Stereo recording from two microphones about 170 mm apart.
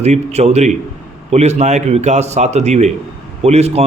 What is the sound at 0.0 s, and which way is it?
A man's voice, 40° right (ahead or behind).